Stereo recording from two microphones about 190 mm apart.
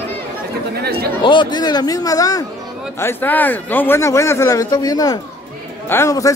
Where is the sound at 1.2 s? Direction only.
25° left (ahead or behind).